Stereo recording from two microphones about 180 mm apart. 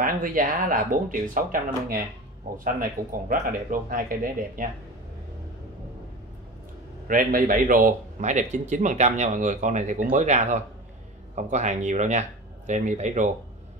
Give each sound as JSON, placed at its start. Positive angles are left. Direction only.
{"t": 0.0, "sound": "a man's voice", "side_deg": -50}
{"t": 7.1, "sound": "a man's voice", "side_deg": -50}